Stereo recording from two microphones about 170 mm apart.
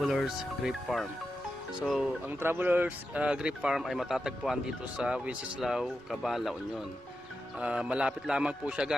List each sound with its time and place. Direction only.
0.0 s speech: centre (ahead or behind)
7.6 s speech: 5° right (ahead or behind)